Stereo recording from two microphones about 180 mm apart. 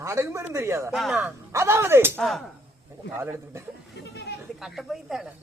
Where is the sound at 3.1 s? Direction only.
15° right (ahead or behind).